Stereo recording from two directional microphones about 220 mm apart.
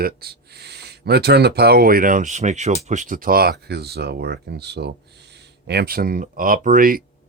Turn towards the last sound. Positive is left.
turn(degrees=-40)  # may be behind; listen again after turning